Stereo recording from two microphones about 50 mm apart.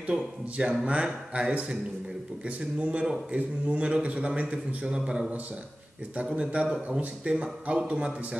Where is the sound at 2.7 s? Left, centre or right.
Right.